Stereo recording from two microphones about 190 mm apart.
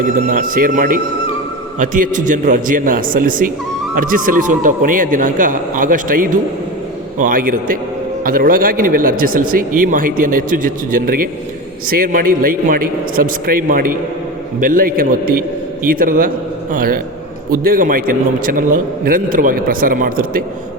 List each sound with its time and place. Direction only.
0.3 s a man's voice: 45° right (ahead or behind)